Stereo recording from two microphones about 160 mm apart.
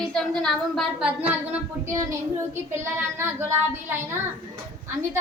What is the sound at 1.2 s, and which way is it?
A child's voice, 10° right (ahead or behind).